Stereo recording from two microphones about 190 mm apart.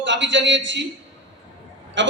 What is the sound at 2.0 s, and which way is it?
Speech, 70° right (ahead or behind).